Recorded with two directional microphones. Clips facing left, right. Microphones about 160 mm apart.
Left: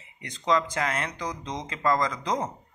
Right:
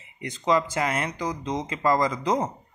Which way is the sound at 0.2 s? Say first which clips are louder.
Right 2 dB; 5° right (ahead or behind).